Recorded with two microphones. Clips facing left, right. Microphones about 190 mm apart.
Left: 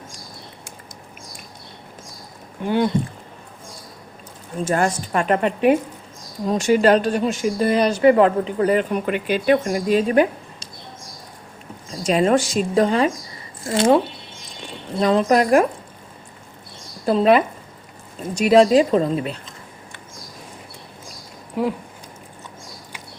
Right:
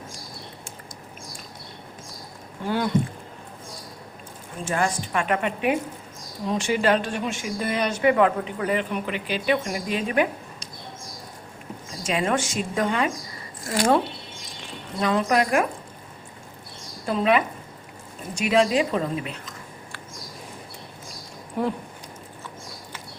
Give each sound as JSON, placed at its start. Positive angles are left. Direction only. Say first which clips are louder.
{"t": 2.6, "sound": "speech", "louder": "left 6 dB", "side_deg": 20}
{"t": 4.6, "sound": "a woman's voice", "louder": "left 5 dB", "side_deg": 40}
{"t": 12.0, "sound": "a woman's voice", "louder": "left 7 dB", "side_deg": 35}
{"t": 13.7, "sound": "a woman's voice", "louder": "left 5 dB", "side_deg": 20}
{"t": 17.1, "sound": "a woman's voice", "louder": "left 6 dB", "side_deg": 35}